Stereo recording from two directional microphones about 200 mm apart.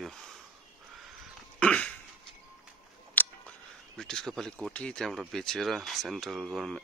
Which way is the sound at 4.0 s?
5° left (ahead or behind).